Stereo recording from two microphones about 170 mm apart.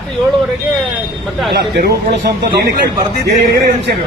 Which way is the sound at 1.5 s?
80° right.